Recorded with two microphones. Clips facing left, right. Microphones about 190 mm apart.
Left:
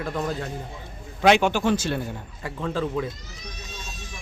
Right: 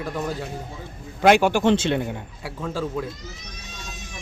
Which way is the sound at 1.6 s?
25° right (ahead or behind).